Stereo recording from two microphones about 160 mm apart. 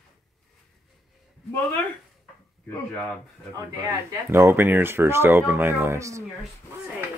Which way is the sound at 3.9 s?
15° right (ahead or behind).